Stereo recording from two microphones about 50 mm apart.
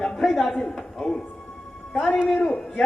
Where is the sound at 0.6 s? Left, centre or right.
Centre.